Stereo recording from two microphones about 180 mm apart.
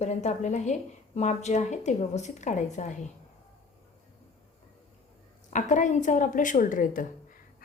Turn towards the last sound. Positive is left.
turn(degrees=45)  # may be behind; listen again after turning